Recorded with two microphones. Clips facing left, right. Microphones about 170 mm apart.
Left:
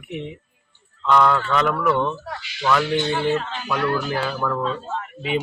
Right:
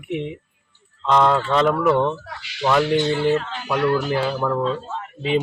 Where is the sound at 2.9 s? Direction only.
35° right (ahead or behind).